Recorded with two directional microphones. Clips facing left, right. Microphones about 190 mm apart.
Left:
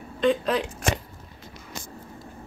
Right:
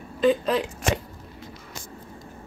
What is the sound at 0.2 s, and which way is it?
Speech, centre (ahead or behind).